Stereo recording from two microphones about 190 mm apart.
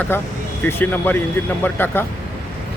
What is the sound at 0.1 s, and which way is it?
Speech, 10° left (ahead or behind).